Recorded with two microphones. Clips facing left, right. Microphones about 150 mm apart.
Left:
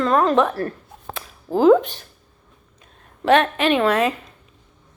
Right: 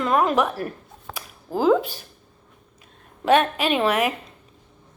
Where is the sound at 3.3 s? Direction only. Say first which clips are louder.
Left 2 dB; 10° right (ahead or behind).